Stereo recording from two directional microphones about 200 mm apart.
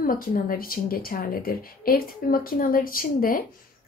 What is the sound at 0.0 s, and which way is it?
Speech, 45° left (ahead or behind).